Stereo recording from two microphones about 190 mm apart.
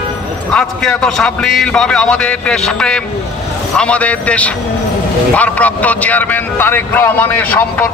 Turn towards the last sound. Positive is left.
turn(degrees=10)  # may be behind; listen again after turning